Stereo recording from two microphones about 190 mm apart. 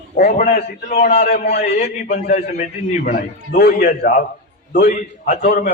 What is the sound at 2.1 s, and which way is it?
A man's voice, 40° left (ahead or behind).